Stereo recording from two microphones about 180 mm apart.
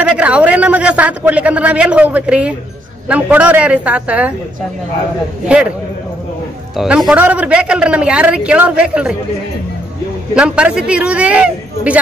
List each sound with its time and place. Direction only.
0.0 s speech: 5° right (ahead or behind)
6.8 s speech: centre (ahead or behind)
10.3 s speech: 5° right (ahead or behind)